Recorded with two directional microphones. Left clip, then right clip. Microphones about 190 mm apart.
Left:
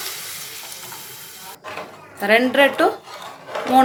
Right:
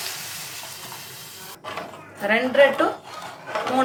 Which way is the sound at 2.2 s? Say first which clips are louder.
Left 3 dB; 60° left (ahead or behind).